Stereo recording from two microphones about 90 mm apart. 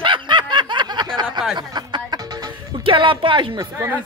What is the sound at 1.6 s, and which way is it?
Music, 55° right (ahead or behind).